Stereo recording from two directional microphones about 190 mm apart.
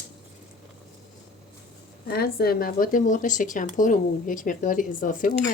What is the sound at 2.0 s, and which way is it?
Speech, 55° left (ahead or behind).